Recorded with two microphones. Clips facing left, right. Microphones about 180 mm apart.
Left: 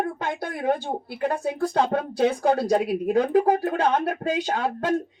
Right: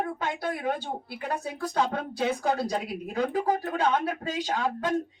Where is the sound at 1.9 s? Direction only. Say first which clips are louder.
Left 6 dB; 55° left (ahead or behind).